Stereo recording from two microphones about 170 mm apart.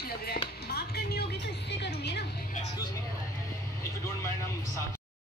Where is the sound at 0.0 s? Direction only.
65° left (ahead or behind).